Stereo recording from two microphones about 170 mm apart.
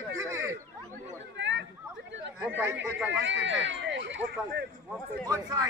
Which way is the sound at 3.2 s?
90° right.